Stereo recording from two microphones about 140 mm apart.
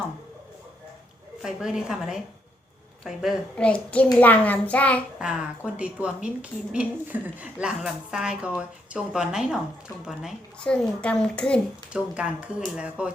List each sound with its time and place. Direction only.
1.4 s speech: 5° right (ahead or behind)
3.5 s speech: 10° left (ahead or behind)
5.2 s speech: 5° right (ahead or behind)
10.7 s speech: 5° left (ahead or behind)
12.1 s speech: 5° right (ahead or behind)